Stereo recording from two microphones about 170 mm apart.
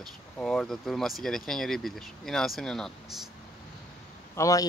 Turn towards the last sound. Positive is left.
turn(degrees=20)  # may be behind; listen again after turning